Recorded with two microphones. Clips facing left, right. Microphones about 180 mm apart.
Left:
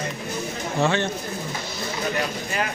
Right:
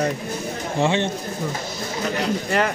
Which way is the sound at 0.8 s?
25° right (ahead or behind).